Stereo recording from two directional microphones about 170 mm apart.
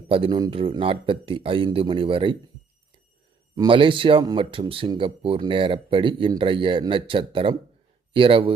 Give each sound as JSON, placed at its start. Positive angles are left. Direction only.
{"t": 0.1, "sound": "speech", "side_deg": -30}
{"t": 3.5, "sound": "speech", "side_deg": -25}